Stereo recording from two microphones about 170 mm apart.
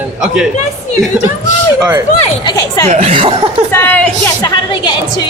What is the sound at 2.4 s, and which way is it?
Speech, 25° left (ahead or behind).